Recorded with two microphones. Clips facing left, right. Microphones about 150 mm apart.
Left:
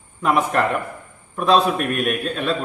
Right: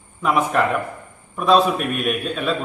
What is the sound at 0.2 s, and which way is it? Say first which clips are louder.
A man's voice: even; centre (ahead or behind).